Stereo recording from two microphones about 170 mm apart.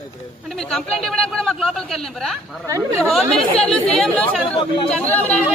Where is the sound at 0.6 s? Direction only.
5° left (ahead or behind).